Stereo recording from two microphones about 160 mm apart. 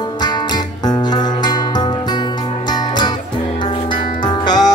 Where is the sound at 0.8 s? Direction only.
25° left (ahead or behind).